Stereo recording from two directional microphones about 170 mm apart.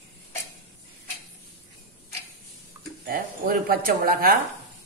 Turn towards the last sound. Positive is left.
turn(degrees=-60)  # may be behind; listen again after turning